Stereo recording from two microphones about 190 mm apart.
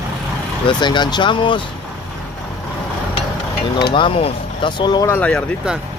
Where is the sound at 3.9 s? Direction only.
25° left (ahead or behind).